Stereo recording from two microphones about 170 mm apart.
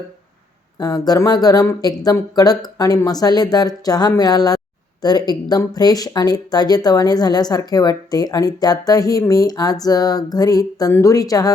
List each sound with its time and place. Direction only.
0.8 s speech: 20° left (ahead or behind)